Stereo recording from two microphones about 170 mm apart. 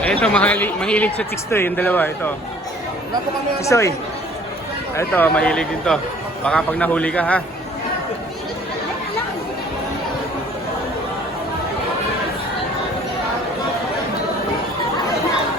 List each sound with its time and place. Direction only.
0.0 s a man's voice: 5° left (ahead or behind)
3.6 s a man's voice: 15° left (ahead or behind)
4.9 s a man's voice: 10° left (ahead or behind)